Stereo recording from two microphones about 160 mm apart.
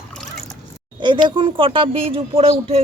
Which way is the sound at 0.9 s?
30° right (ahead or behind).